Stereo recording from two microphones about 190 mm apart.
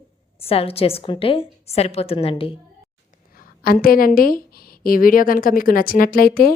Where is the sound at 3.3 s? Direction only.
50° left (ahead or behind).